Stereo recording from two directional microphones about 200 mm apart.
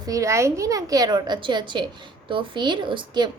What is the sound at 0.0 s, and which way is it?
A woman's voice, 15° right (ahead or behind).